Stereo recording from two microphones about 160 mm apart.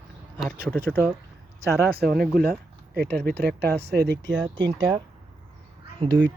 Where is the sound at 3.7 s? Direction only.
85° right.